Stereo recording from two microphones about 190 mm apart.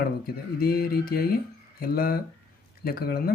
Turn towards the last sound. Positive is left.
turn(degrees=50)  # may be behind; listen again after turning